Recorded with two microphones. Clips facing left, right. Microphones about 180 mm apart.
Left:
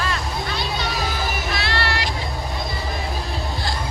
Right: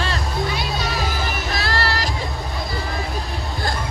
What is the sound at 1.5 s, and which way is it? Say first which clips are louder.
Vehicle: right 3 dB; 40° right (ahead or behind).